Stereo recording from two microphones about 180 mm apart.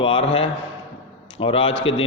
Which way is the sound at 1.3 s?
30° left (ahead or behind).